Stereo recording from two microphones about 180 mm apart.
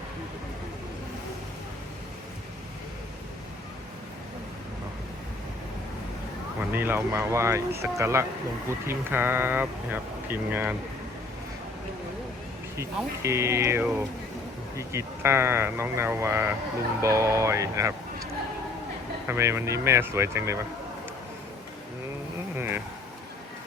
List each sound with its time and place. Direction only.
6.7 s speech: 10° right (ahead or behind)
12.7 s speech: 15° right (ahead or behind)
19.3 s speech: 15° right (ahead or behind)
22.5 s speech: 10° right (ahead or behind)